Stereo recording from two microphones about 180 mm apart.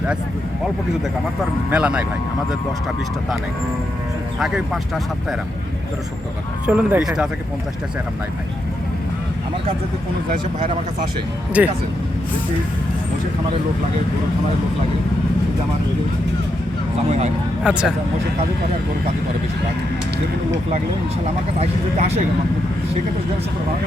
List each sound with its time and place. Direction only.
1.7 s speech: 5° right (ahead or behind)
4.4 s speech: 5° right (ahead or behind)
6.7 s speech: 5° right (ahead or behind)
11.6 s speech: 10° right (ahead or behind)
17.1 s speech: 40° right (ahead or behind)
17.6 s speech: 5° right (ahead or behind)
21.6 s speech: 35° right (ahead or behind)